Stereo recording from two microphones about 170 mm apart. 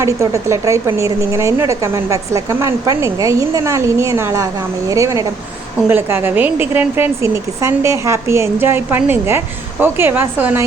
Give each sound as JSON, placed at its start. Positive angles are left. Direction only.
{"t": 0.0, "sound": "a woman's voice", "side_deg": -15}